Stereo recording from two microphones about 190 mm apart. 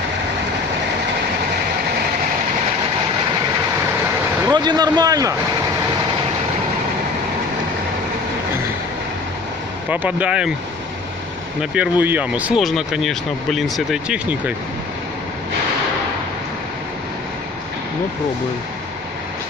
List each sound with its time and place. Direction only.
4.5 s a man's voice: 20° right (ahead or behind)
9.8 s speech: 10° right (ahead or behind)
11.7 s speech: 10° right (ahead or behind)